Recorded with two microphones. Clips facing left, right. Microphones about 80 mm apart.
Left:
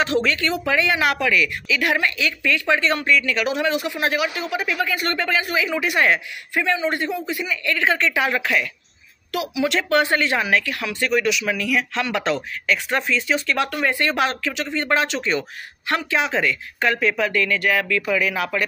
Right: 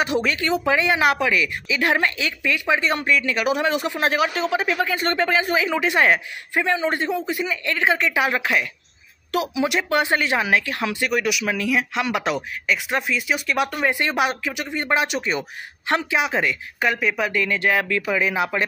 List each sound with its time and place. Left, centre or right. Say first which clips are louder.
0.0 s speech: left 1 dB; centre
11.9 s speech: even; centre